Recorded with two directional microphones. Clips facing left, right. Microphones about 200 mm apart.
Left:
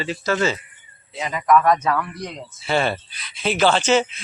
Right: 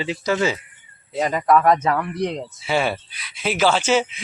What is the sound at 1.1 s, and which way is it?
Speech, 40° right (ahead or behind).